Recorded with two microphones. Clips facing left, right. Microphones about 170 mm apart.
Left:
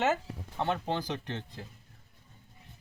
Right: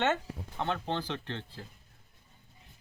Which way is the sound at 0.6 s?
10° left (ahead or behind).